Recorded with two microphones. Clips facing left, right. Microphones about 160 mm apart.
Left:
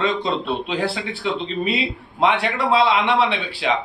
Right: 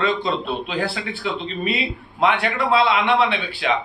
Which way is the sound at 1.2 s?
30° left (ahead or behind).